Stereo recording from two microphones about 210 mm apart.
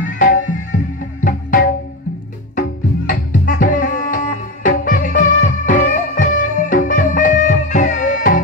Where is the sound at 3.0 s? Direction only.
40° left (ahead or behind).